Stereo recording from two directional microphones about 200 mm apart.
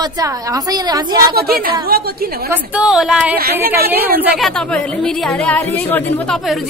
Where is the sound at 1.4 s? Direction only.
50° right (ahead or behind).